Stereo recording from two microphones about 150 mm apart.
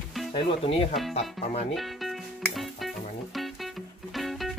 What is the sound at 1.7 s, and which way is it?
Music, centre (ahead or behind).